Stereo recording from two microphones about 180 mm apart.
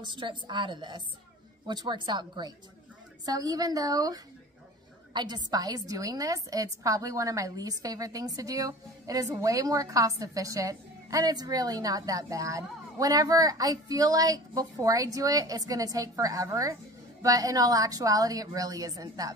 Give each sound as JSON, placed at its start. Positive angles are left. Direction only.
{"t": 0.0, "sound": "a woman's voice", "side_deg": -25}